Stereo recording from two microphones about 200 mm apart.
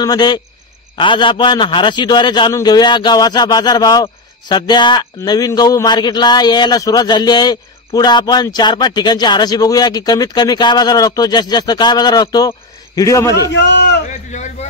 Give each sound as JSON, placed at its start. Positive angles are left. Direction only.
{"t": 0.0, "sound": "a man's voice", "side_deg": 20}
{"t": 13.5, "sound": "a man's voice", "side_deg": 60}
{"t": 14.0, "sound": "a sound", "side_deg": 35}